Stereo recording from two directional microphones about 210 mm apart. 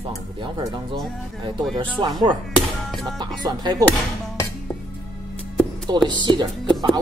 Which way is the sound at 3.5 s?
20° right (ahead or behind).